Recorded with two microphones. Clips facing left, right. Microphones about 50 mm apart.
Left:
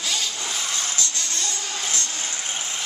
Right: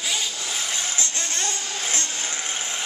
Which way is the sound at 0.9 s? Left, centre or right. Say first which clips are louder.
Right 1 dB; right.